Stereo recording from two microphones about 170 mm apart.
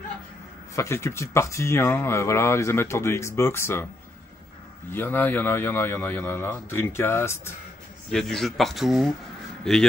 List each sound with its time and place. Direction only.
0.7 s speech: 15° left (ahead or behind)
4.9 s speech: 10° left (ahead or behind)
8.1 s speech: centre (ahead or behind)